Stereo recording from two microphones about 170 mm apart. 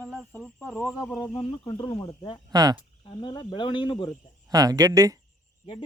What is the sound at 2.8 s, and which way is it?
Speech, 25° left (ahead or behind).